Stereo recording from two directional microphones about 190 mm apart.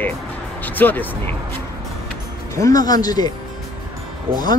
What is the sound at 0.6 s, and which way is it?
Speech, 10° left (ahead or behind).